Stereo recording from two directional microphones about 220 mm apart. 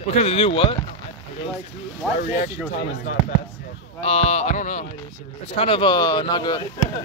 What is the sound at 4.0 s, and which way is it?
Speech, 30° left (ahead or behind).